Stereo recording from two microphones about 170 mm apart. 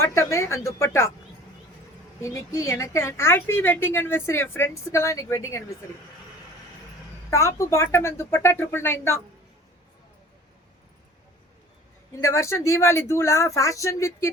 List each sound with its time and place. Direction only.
0.0 s a woman's voice: 15° left (ahead or behind)
2.2 s a woman's voice: 15° left (ahead or behind)
7.3 s a woman's voice: 20° left (ahead or behind)
12.2 s a woman's voice: 15° left (ahead or behind)